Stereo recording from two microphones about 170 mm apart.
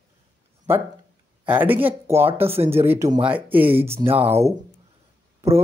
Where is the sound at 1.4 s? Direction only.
10° right (ahead or behind).